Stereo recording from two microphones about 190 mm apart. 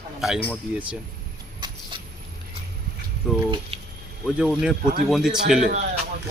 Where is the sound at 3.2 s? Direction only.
Centre (ahead or behind).